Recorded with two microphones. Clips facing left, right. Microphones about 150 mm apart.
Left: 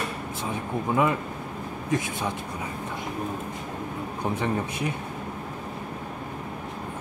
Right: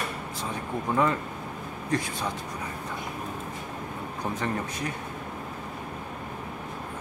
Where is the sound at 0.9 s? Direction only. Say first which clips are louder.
Left 1 dB; 10° left (ahead or behind).